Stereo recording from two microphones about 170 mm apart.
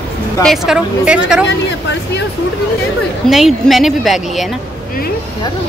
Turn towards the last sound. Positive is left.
turn(degrees=0)  # may be behind; listen again after turning